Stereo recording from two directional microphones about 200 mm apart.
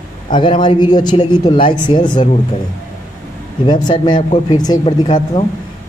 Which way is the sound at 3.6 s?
20° left (ahead or behind).